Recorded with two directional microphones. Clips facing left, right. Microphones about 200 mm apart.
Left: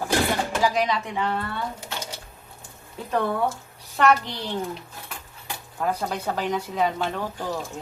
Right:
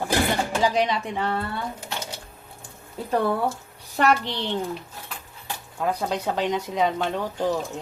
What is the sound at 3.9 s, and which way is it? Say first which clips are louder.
Speech: left 1 dB; 35° right (ahead or behind).